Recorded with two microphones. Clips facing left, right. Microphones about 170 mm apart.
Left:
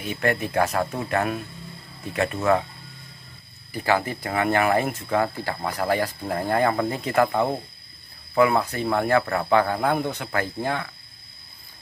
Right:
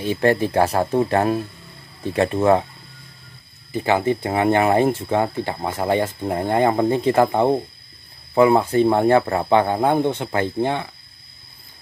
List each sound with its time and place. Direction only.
0.0 s speech: 30° right (ahead or behind)
3.7 s speech: 20° right (ahead or behind)